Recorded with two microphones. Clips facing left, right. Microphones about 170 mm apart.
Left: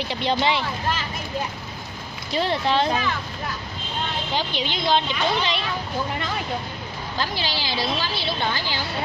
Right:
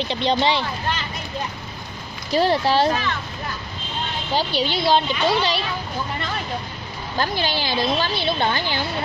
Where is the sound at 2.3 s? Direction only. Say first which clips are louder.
Right 4 dB; 40° right (ahead or behind).